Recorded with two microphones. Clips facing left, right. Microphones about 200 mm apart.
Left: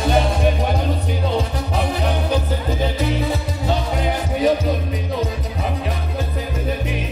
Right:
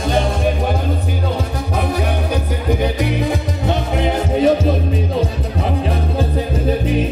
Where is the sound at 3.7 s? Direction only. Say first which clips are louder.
Right 3 dB; 20° right (ahead or behind).